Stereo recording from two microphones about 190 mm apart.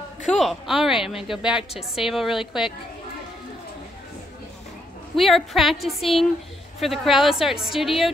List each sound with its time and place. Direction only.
0.3 s speech: centre (ahead or behind)
5.1 s speech: centre (ahead or behind)